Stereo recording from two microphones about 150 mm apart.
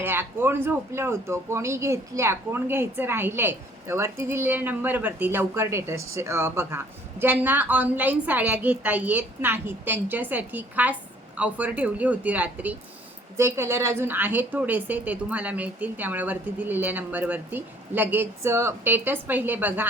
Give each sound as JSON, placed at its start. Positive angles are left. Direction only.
{"t": 0.0, "sound": "speech", "side_deg": -15}